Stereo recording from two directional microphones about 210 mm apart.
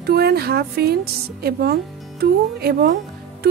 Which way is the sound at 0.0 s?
50° right (ahead or behind).